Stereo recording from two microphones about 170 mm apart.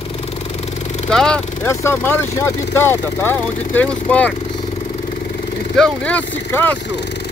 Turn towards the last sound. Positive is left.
turn(degrees=10)  # may be behind; listen again after turning